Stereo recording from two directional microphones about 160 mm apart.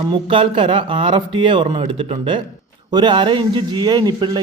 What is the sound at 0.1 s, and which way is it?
A man's voice, 30° right (ahead or behind).